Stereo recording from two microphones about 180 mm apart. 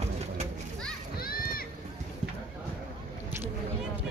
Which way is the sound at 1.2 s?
55° left (ahead or behind).